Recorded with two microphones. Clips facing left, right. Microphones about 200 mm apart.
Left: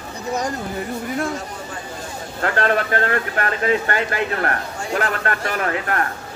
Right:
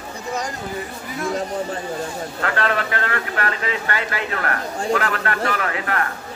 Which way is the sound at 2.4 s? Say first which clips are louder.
Left 3 dB; 45° left (ahead or behind).